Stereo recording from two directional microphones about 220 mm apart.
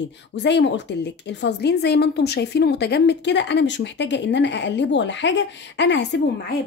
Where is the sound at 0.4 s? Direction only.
50° left (ahead or behind).